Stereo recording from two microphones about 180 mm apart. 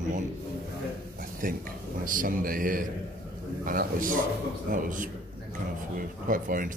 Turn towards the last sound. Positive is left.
turn(degrees=-50)  # may be behind; listen again after turning